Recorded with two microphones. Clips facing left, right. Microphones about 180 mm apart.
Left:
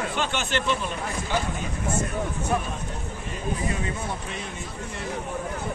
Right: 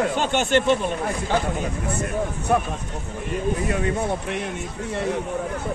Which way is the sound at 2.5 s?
55° right (ahead or behind).